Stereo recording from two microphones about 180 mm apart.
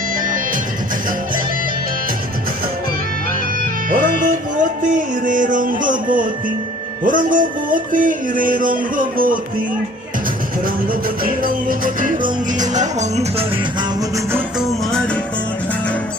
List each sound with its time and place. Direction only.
3.8 s music: 50° right (ahead or behind)
11.2 s music: 50° right (ahead or behind)